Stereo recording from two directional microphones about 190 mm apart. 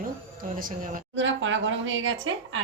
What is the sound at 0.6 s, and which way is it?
Speech, 45° right (ahead or behind).